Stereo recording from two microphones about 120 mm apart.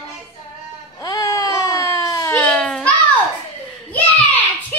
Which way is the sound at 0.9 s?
30° left (ahead or behind).